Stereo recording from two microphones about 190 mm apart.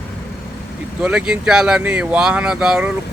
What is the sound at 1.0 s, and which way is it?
Speech, 5° right (ahead or behind).